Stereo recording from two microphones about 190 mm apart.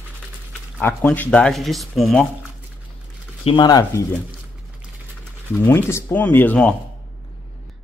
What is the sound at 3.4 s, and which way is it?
Speech, 25° left (ahead or behind).